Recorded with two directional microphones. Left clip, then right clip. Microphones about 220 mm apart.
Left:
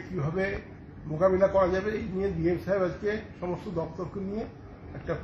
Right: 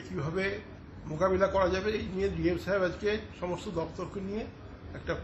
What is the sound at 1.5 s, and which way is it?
A man's voice, 30° right (ahead or behind).